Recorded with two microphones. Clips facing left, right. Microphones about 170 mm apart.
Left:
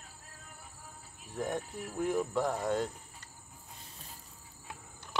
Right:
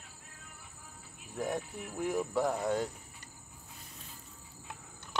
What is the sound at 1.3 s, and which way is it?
Speech, 5° right (ahead or behind).